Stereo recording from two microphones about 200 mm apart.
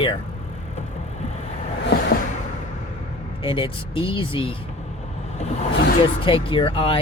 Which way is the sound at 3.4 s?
25° left (ahead or behind).